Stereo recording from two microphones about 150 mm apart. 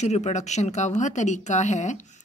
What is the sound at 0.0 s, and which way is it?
A woman's voice, 50° left (ahead or behind).